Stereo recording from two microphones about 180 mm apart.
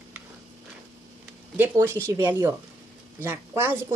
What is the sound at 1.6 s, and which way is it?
A woman's voice, 15° right (ahead or behind).